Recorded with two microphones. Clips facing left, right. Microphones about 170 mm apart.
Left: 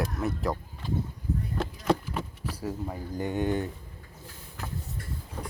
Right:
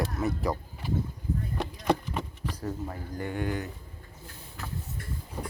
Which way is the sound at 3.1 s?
20° left (ahead or behind).